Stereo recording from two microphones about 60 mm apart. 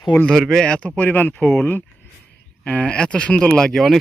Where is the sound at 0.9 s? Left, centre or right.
Left.